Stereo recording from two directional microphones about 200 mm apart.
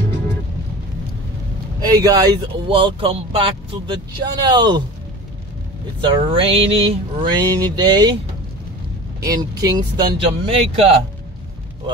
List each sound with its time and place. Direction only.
1.8 s speech: 20° right (ahead or behind)
5.9 s speech: 25° right (ahead or behind)
9.2 s speech: 20° right (ahead or behind)